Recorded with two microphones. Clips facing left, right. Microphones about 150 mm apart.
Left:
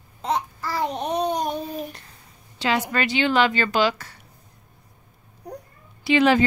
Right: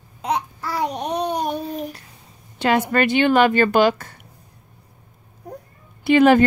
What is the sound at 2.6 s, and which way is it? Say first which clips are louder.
Speech: right 5 dB; 55° right (ahead or behind).